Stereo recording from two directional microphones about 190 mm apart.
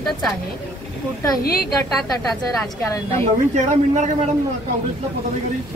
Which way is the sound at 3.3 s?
35° right (ahead or behind).